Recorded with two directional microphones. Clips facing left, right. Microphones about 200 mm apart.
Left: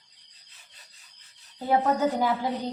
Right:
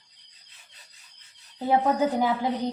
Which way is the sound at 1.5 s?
15° right (ahead or behind).